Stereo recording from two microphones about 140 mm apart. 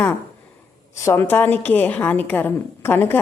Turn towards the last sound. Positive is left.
turn(degrees=15)  # may be behind; listen again after turning